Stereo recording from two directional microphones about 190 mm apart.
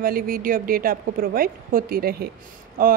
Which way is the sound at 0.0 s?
50° right (ahead or behind).